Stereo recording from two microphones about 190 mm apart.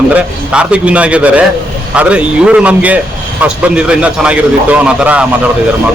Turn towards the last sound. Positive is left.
turn(degrees=-5)  # may be behind; listen again after turning